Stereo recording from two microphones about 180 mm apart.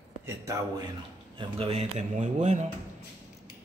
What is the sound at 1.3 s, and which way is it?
Speech, 30° right (ahead or behind).